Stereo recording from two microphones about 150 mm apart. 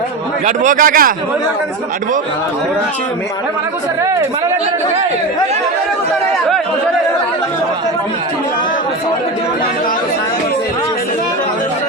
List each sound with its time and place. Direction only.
0.4 s a man's voice: 60° right (ahead or behind)